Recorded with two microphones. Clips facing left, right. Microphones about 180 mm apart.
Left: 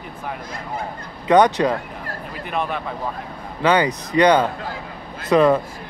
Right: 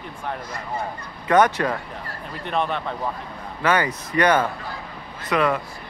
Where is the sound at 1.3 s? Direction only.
15° left (ahead or behind).